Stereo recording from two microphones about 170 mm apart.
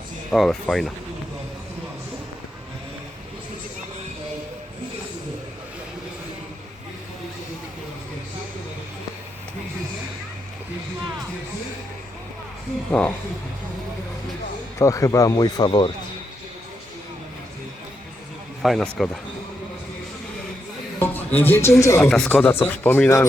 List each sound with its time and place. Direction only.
0.3 s speech: centre (ahead or behind)
12.9 s speech: 10° left (ahead or behind)
14.8 s speech: 20° left (ahead or behind)
18.6 s speech: centre (ahead or behind)
21.0 s a man's voice: 10° left (ahead or behind)
22.1 s speech: 5° left (ahead or behind)